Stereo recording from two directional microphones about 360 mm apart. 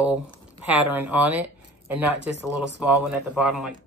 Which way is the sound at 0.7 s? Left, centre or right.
Centre.